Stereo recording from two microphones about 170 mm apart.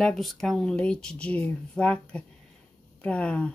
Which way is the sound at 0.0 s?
Centre (ahead or behind).